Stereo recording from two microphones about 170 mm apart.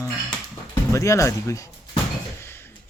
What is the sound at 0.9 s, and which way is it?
Speech, 20° left (ahead or behind).